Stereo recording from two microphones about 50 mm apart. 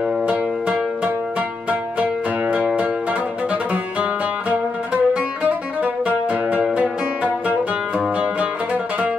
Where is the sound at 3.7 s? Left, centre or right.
Right.